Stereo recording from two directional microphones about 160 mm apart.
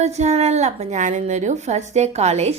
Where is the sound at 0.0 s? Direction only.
45° right (ahead or behind).